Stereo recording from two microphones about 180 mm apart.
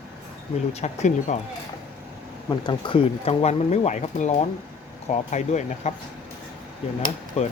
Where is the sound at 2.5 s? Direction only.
25° left (ahead or behind); by 5.9 s 40° left (ahead or behind).